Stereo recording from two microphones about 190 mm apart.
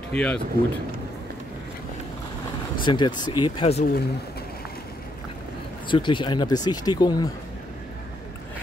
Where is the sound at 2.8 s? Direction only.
25° left (ahead or behind).